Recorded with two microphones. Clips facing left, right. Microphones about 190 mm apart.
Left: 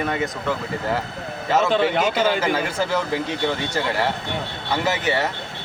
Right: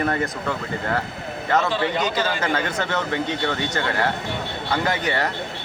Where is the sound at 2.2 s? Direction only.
10° left (ahead or behind).